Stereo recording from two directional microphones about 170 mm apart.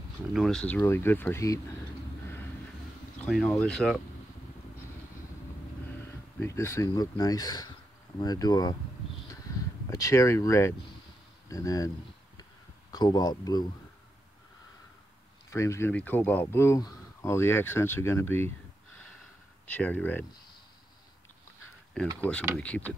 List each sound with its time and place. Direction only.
0.3 s speech: centre (ahead or behind)
3.2 s speech: 5° left (ahead or behind)
6.0 s speech: 15° left (ahead or behind)
9.8 s speech: 20° left (ahead or behind)
12.9 s speech: 25° left (ahead or behind)
15.5 s speech: 15° left (ahead or behind)
19.7 s speech: 10° left (ahead or behind)
22.0 s speech: 5° left (ahead or behind)